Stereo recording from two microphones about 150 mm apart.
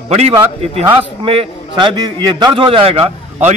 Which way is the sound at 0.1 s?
45° right (ahead or behind).